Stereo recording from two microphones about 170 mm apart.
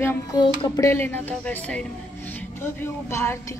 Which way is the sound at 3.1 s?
15° left (ahead or behind).